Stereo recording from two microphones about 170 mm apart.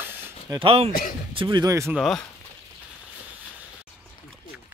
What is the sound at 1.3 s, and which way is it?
Speech, 25° right (ahead or behind).